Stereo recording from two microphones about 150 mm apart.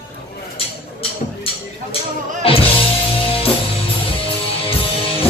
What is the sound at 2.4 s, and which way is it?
Music, 40° left (ahead or behind).